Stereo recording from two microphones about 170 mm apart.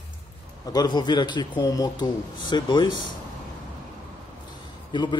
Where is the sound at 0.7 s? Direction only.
25° left (ahead or behind).